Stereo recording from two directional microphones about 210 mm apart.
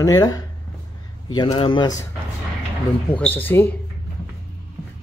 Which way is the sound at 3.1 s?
10° left (ahead or behind).